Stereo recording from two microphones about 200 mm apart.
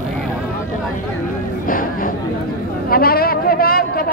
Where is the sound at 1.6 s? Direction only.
45° left (ahead or behind).